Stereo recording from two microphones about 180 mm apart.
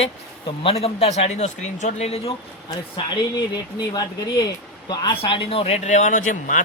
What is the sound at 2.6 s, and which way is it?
Speech, 25° left (ahead or behind).